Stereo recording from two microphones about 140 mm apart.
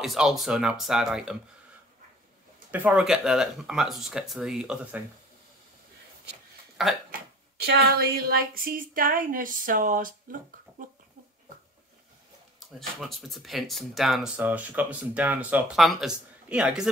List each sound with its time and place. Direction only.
0.0 s speech: centre (ahead or behind)
2.7 s speech: 10° right (ahead or behind)
6.8 s speech: centre (ahead or behind)
7.9 s a sound: 90° right; by 10.1 s 75° right (ahead or behind)
12.5 s speech: centre (ahead or behind)